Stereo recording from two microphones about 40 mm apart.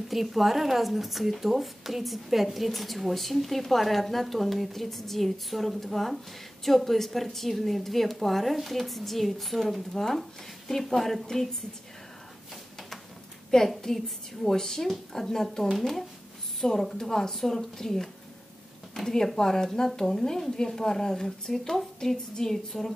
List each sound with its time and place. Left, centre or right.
0.1 s speech: centre
13.7 s a woman's voice: centre